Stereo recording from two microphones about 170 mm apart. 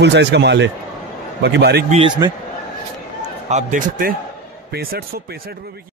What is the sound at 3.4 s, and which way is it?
Speech, 45° right (ahead or behind).